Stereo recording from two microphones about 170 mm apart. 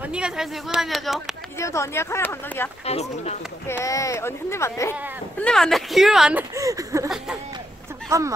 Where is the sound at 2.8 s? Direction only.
40° left (ahead or behind).